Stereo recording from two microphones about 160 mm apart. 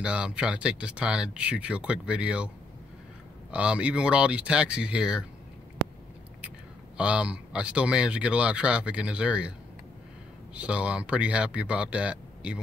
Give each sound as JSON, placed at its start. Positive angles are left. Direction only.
{"t": 0.0, "sound": "speech", "side_deg": -5}
{"t": 3.5, "sound": "speech", "side_deg": -10}
{"t": 7.0, "sound": "speech", "side_deg": -5}
{"t": 10.5, "sound": "speech", "side_deg": -5}